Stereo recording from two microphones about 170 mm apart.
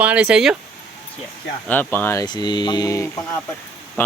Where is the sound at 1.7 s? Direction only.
10° left (ahead or behind).